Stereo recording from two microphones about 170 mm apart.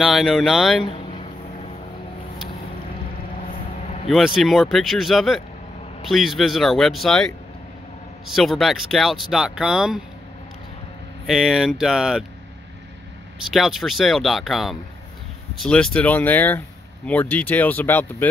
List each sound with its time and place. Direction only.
0.0 s speech: centre (ahead or behind)
0.8 s a sound: 35° left (ahead or behind)
4.1 s speech: centre (ahead or behind)
8.3 s speech: centre (ahead or behind)
11.2 s speech: centre (ahead or behind)
13.5 s speech: centre (ahead or behind)